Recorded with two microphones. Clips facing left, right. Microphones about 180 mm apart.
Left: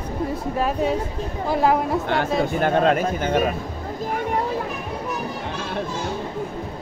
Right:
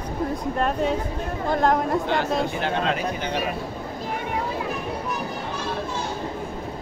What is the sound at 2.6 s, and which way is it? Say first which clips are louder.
Speech: left 6 dB; 50° left (ahead or behind).